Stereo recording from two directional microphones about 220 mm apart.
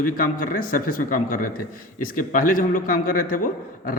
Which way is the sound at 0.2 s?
40° left (ahead or behind).